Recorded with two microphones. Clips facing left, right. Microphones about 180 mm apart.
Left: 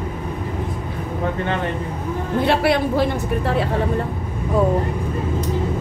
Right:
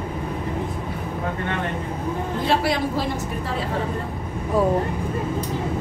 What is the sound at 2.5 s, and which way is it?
A woman's voice, 60° left (ahead or behind).